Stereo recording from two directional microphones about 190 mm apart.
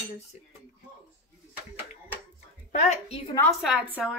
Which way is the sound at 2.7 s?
35° left (ahead or behind).